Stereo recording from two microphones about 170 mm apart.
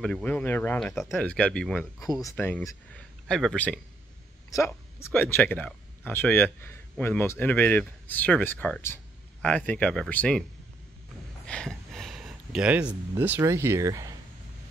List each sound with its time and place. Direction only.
0.0 s speech: 5° left (ahead or behind)
2.0 s a man's voice: 20° left (ahead or behind)
4.5 s speech: 15° left (ahead or behind)
11.4 s speech: 5° left (ahead or behind); by 14.1 s 20° right (ahead or behind)